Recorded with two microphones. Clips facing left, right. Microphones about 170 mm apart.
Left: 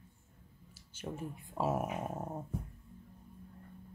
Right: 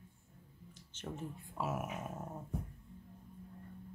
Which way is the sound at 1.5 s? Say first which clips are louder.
Left 6 dB; 30° left (ahead or behind).